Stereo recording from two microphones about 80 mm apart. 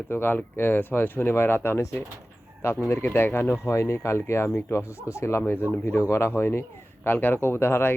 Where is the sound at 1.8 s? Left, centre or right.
Left.